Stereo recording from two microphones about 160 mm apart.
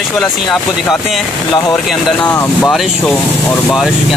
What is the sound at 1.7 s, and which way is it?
Speech, 10° left (ahead or behind).